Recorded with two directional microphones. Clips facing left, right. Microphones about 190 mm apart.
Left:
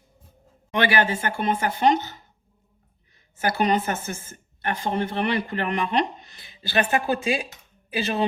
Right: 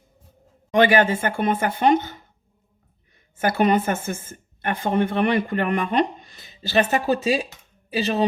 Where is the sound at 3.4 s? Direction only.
55° right (ahead or behind).